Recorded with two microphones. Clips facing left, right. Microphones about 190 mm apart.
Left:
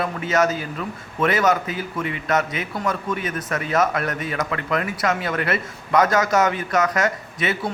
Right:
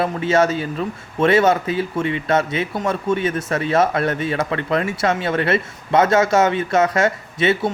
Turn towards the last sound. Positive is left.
turn(degrees=-25)  # may be behind; listen again after turning